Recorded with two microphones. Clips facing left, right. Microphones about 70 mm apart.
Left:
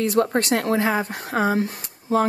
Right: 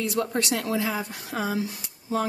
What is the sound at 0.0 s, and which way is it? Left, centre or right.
A woman's voice, left.